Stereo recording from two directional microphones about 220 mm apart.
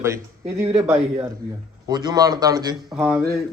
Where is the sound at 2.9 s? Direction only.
5° right (ahead or behind).